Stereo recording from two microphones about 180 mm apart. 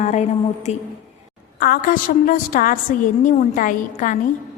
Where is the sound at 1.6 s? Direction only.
50° left (ahead or behind).